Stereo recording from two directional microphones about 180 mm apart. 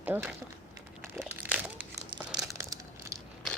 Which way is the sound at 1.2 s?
10° right (ahead or behind).